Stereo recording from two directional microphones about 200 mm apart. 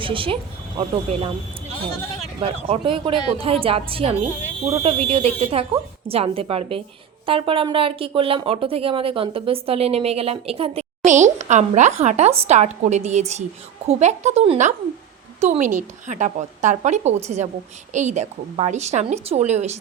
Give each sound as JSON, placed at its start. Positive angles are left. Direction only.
{"t": 0.0, "sound": "speech", "side_deg": -25}
{"t": 2.4, "sound": "a woman's voice", "side_deg": -25}